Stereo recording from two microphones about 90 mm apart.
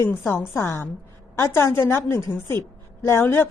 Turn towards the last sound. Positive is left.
turn(degrees=25)  # may be behind; listen again after turning